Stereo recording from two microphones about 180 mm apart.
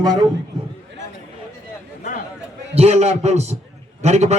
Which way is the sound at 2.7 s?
35° right (ahead or behind).